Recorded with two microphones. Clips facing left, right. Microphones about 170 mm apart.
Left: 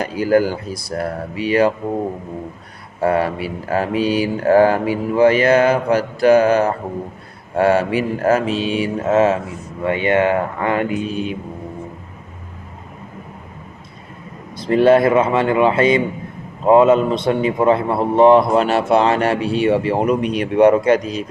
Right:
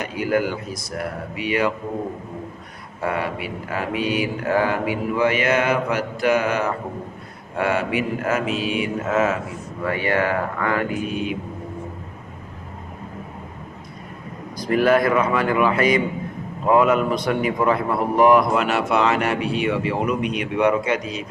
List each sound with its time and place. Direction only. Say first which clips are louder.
0.0 s a man's voice: left 6 dB; 35° left (ahead or behind)
3.0 s a man's voice: left 7 dB; 35° left (ahead or behind)
14.6 s a man's voice: left 5 dB; 25° left (ahead or behind)